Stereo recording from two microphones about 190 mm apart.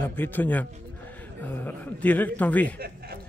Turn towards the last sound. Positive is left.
turn(degrees=-55)  # may be behind; listen again after turning